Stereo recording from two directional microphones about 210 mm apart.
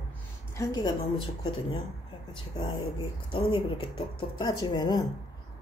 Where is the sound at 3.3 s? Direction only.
25° left (ahead or behind).